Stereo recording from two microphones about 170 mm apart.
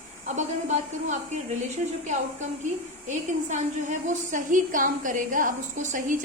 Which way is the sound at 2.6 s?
45° right (ahead or behind).